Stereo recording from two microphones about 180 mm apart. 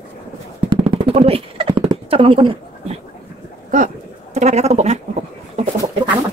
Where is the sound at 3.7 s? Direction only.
40° right (ahead or behind).